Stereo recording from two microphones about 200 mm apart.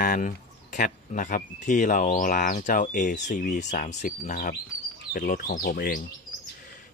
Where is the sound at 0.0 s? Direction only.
40° left (ahead or behind).